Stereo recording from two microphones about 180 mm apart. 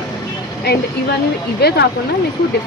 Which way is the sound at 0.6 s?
65° left (ahead or behind).